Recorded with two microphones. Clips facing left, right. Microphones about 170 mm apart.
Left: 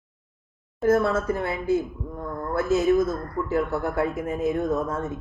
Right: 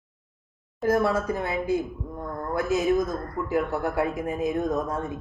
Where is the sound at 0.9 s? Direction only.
15° right (ahead or behind).